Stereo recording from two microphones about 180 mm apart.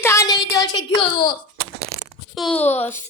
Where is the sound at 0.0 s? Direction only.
15° left (ahead or behind).